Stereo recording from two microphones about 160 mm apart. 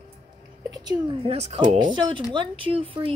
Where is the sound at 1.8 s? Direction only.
30° right (ahead or behind).